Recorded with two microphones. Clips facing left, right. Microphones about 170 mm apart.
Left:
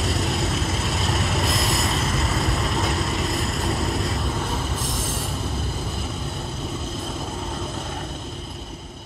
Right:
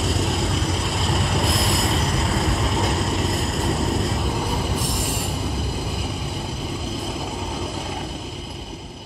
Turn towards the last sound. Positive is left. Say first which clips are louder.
# right 2 dB
turn(degrees=0)  # may be behind; listen again after turning